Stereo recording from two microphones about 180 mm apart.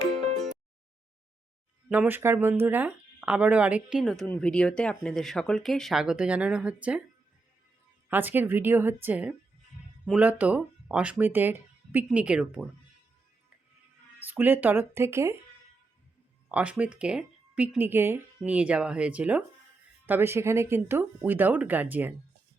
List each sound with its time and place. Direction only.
0.1 s music: centre (ahead or behind)
1.9 s speech: 10° right (ahead or behind)
8.1 s speech: 10° right (ahead or behind)
14.2 s speech: 10° right (ahead or behind)
16.5 s speech: 5° right (ahead or behind)